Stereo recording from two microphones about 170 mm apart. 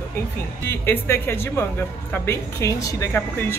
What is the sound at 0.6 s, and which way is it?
A woman's voice, 15° left (ahead or behind).